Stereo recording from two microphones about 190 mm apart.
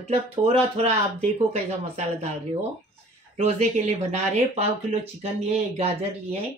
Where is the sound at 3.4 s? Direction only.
35° right (ahead or behind).